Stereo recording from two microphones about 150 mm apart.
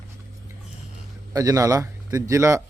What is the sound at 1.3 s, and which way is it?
Speech, 20° right (ahead or behind).